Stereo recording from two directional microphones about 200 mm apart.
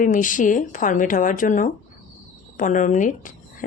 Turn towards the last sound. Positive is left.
turn(degrees=40)  # may be behind; listen again after turning